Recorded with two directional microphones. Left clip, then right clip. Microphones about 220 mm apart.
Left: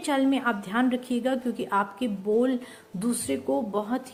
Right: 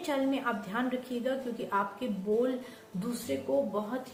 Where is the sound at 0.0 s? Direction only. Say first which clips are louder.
Left 6 dB; 50° left (ahead or behind).